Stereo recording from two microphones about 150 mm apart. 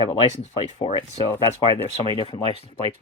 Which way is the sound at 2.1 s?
40° left (ahead or behind).